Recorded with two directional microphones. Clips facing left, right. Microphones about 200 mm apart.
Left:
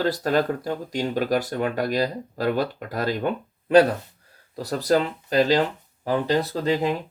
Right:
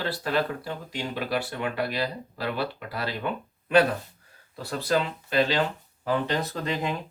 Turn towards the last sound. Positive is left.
turn(degrees=35)  # may be behind; listen again after turning